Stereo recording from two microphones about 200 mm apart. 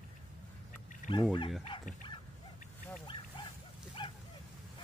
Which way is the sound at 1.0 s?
40° left (ahead or behind).